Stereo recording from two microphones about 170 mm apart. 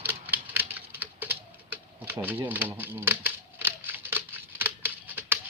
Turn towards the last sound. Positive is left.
turn(degrees=-10)  # may be behind; listen again after turning